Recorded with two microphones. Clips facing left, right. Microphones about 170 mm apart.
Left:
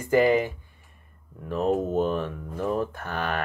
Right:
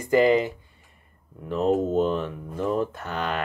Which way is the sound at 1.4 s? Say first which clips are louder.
Right 2 dB; 20° right (ahead or behind).